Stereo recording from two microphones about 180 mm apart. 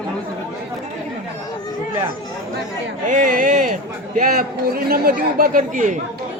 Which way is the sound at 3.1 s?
45° right (ahead or behind).